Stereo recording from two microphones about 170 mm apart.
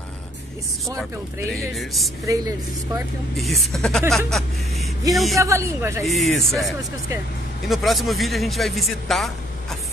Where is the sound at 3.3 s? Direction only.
Centre (ahead or behind).